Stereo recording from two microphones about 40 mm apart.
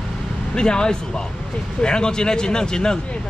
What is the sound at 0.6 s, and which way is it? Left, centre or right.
Speech, centre.